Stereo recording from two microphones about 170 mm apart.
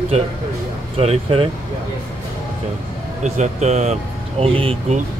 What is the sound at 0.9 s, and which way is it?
Speech, 35° right (ahead or behind).